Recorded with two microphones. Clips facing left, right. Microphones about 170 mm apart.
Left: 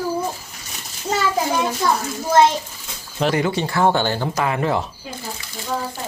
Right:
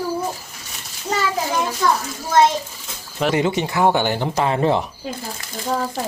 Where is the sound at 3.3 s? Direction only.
20° right (ahead or behind).